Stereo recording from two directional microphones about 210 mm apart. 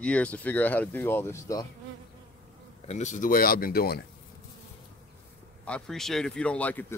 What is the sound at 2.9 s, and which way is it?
Speech, 35° left (ahead or behind).